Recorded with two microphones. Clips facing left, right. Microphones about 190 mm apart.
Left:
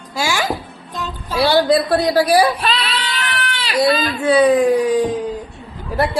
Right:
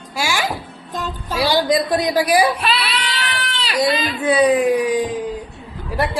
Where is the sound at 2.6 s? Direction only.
35° left (ahead or behind).